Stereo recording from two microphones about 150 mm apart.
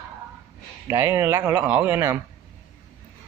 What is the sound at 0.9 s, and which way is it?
Speech, 15° right (ahead or behind).